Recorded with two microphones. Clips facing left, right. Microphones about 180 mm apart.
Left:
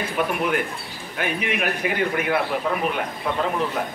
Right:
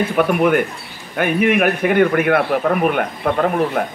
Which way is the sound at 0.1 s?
55° right (ahead or behind).